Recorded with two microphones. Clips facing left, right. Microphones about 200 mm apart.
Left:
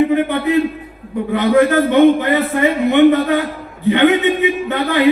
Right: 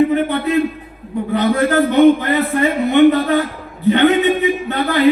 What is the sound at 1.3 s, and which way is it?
A man's voice, 15° left (ahead or behind).